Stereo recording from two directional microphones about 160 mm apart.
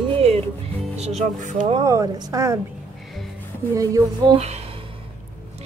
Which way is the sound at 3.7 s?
20° right (ahead or behind).